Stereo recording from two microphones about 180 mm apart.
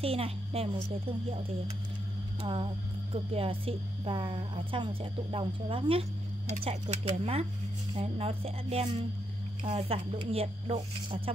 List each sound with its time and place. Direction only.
0.0 s speech: 30° right (ahead or behind)
2.4 s a woman's voice: 30° right (ahead or behind)